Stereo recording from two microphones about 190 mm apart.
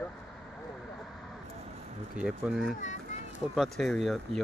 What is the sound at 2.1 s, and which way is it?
Speech, 5° right (ahead or behind).